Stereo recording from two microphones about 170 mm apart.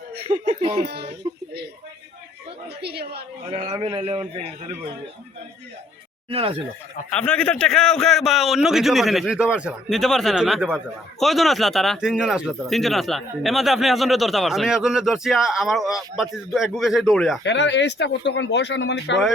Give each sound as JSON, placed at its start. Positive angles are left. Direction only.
{"t": 0.4, "sound": "a man's voice", "side_deg": -35}
{"t": 1.2, "sound": "a sound", "side_deg": -30}
{"t": 2.8, "sound": "speech", "side_deg": -70}
{"t": 3.5, "sound": "a man's voice", "side_deg": -30}
{"t": 6.3, "sound": "a man's voice", "side_deg": -35}
{"t": 7.1, "sound": "speech", "side_deg": 5}
{"t": 17.4, "sound": "speech", "side_deg": 90}